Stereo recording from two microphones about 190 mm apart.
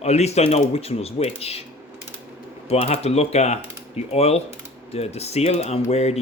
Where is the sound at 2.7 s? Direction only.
35° left (ahead or behind).